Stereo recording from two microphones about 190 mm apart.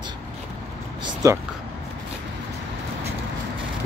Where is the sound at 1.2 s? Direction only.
15° right (ahead or behind).